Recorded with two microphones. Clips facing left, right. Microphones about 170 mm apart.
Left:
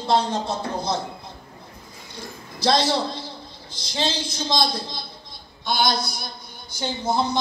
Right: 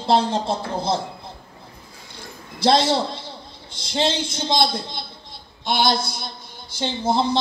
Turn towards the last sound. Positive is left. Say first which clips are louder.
# right 3 dB
turn(degrees=-25)  # may be behind; listen again after turning